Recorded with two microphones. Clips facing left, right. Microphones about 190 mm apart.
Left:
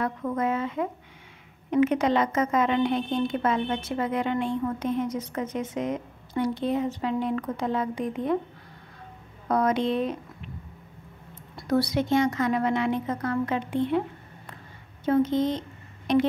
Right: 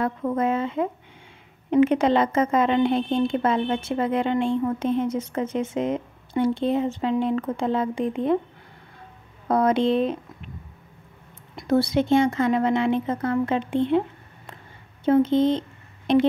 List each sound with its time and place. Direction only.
0.0 s a woman's voice: 30° right (ahead or behind)
9.5 s a woman's voice: 30° right (ahead or behind)
11.5 s a woman's voice: 25° right (ahead or behind)